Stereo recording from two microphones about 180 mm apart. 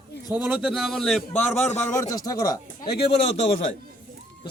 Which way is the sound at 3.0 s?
35° left (ahead or behind).